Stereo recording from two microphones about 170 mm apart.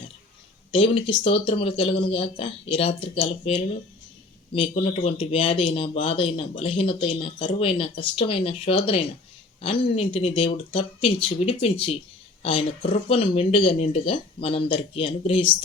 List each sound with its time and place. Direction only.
0.7 s speech: 30° left (ahead or behind)
4.8 s speech: 35° left (ahead or behind)